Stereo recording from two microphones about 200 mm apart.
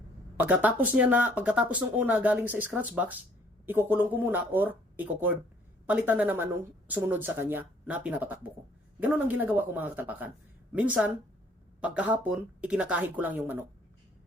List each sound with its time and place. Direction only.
0.3 s speech: 10° right (ahead or behind)